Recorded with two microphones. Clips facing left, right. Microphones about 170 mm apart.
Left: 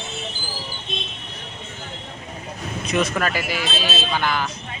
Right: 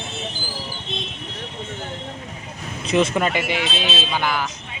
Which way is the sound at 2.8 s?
25° right (ahead or behind).